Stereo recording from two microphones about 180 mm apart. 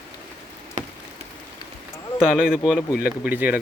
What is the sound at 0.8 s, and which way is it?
Rain on surface, 40° right (ahead or behind).